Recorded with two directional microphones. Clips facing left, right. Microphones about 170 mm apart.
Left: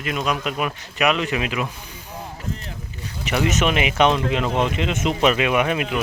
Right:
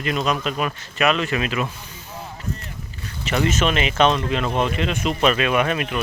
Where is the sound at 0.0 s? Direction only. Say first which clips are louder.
Right 1 dB; 5° left (ahead or behind).